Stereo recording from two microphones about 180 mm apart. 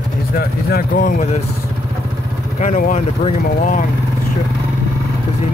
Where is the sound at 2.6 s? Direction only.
45° left (ahead or behind).